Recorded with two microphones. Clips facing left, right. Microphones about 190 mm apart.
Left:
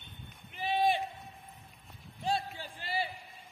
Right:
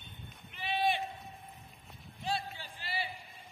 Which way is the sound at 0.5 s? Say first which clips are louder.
Left 3 dB; 40° left (ahead or behind).